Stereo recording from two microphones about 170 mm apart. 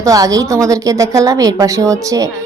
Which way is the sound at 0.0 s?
20° right (ahead or behind).